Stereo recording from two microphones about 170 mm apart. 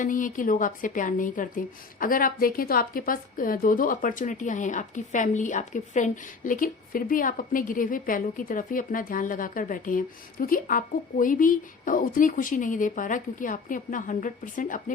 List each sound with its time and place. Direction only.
0.0 s a woman's voice: 50° left (ahead or behind)